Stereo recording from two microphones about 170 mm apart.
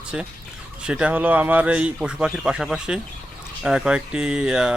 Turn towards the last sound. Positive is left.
turn(degrees=-5)  # may be behind; listen again after turning